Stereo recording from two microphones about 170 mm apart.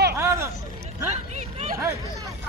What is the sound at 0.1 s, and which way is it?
Vehicle, 15° right (ahead or behind).